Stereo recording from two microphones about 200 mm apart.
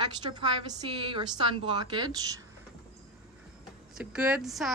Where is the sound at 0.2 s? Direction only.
25° right (ahead or behind).